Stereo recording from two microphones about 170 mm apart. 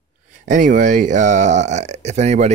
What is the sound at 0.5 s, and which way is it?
Speech, 50° right (ahead or behind).